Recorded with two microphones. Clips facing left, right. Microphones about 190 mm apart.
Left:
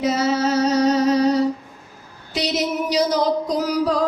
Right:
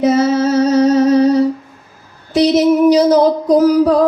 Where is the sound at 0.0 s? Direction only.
50° right (ahead or behind).